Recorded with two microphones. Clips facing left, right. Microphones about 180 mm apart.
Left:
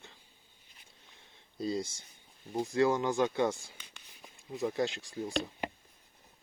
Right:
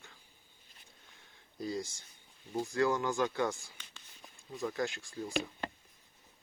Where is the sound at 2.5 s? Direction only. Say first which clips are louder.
Left 3 dB; 20° left (ahead or behind).